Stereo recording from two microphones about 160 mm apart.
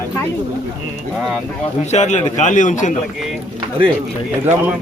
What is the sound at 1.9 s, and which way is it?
A man's voice, 45° left (ahead or behind).